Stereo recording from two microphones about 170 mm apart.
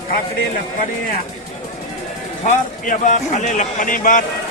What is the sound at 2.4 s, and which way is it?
A man's voice, 45° left (ahead or behind).